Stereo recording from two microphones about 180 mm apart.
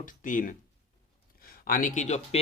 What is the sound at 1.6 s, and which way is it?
Speech, 50° left (ahead or behind).